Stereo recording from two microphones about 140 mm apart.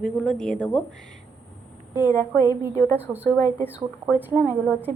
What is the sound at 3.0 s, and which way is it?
Speech, 10° right (ahead or behind).